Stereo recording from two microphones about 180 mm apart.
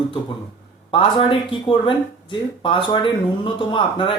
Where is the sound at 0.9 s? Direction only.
30° left (ahead or behind).